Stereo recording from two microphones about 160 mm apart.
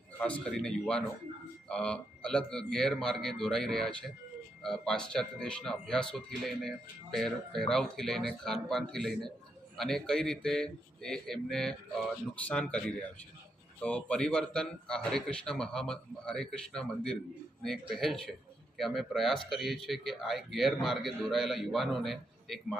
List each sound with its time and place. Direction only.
0.2 s speech: 10° left (ahead or behind)